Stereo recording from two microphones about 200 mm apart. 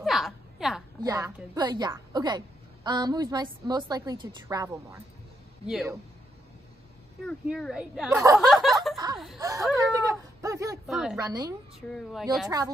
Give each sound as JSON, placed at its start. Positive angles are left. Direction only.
{"t": 0.0, "sound": "a sound", "side_deg": 0}
{"t": 1.0, "sound": "a woman's voice", "side_deg": -15}
{"t": 7.2, "sound": "speech", "side_deg": 0}
{"t": 8.4, "sound": "a sound", "side_deg": 0}
{"t": 8.9, "sound": "laughter", "side_deg": -20}
{"t": 9.4, "sound": "speech", "side_deg": -15}
{"t": 9.9, "sound": "a sound", "side_deg": -15}
{"t": 10.9, "sound": "speech", "side_deg": 0}
{"t": 11.2, "sound": "a woman's voice", "side_deg": -20}
{"t": 11.9, "sound": "speech", "side_deg": 0}
{"t": 12.4, "sound": "a woman's voice", "side_deg": -20}